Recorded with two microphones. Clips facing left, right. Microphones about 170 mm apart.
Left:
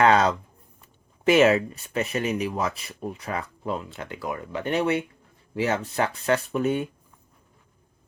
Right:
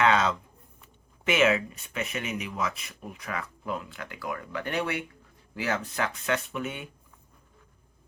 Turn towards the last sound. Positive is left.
turn(degrees=40)  # may be behind; listen again after turning